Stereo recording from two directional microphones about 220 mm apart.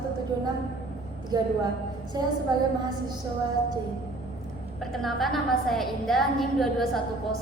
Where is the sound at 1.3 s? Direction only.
20° right (ahead or behind).